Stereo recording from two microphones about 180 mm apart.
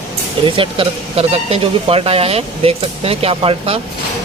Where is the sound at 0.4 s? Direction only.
30° right (ahead or behind).